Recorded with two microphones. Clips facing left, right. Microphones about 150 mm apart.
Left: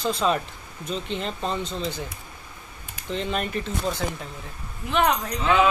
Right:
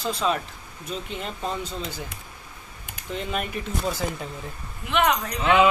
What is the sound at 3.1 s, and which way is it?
Speech, 5° right (ahead or behind).